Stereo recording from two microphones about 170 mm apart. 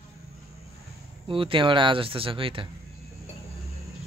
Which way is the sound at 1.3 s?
30° right (ahead or behind).